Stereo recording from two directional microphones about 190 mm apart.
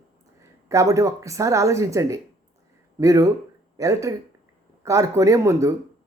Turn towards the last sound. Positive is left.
turn(degrees=-15)  # may be behind; listen again after turning